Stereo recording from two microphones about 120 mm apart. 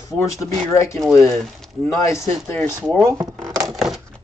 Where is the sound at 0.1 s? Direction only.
25° left (ahead or behind).